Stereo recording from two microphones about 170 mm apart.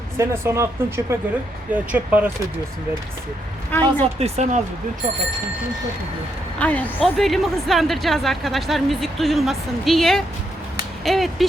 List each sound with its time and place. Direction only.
0.2 s speech: 15° right (ahead or behind)
3.7 s a woman's voice: 10° left (ahead or behind)
4.0 s speech: 40° right (ahead or behind)
6.6 s speech: 10° left (ahead or behind)